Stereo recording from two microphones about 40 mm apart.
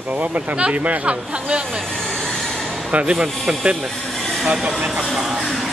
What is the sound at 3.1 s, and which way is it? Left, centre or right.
Speech, right.